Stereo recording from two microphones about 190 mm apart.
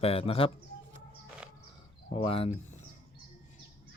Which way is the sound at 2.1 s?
30° left (ahead or behind).